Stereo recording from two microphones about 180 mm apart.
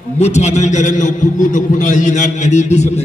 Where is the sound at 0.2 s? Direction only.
40° left (ahead or behind).